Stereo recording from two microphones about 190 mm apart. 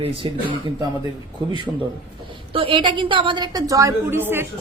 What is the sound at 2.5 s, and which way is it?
A woman's voice, 30° right (ahead or behind).